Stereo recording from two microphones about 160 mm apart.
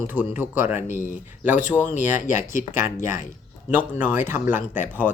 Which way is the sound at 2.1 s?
55° left (ahead or behind).